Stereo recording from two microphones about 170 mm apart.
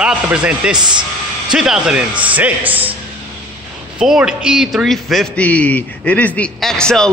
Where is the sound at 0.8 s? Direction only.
25° right (ahead or behind).